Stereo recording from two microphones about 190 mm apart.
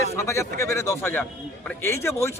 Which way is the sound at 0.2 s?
15° left (ahead or behind).